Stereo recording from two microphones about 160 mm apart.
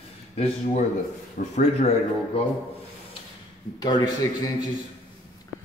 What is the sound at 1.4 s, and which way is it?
Speech, 60° left (ahead or behind).